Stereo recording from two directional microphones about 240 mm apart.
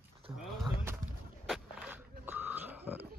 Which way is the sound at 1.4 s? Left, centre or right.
Centre.